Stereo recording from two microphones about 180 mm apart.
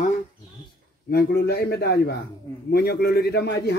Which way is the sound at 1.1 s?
65° left (ahead or behind).